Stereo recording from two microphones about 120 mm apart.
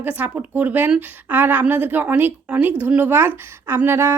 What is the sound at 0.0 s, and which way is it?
Speech, 15° right (ahead or behind).